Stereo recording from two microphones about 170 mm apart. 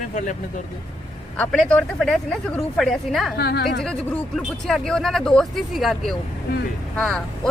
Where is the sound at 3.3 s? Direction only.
70° left (ahead or behind).